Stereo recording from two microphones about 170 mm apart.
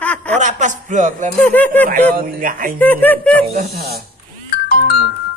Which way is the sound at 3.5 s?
60° right (ahead or behind).